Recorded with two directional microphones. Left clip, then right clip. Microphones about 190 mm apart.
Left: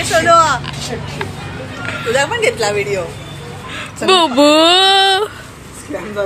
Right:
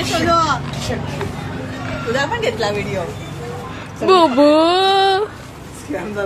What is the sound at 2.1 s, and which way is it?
Speech, 25° left (ahead or behind).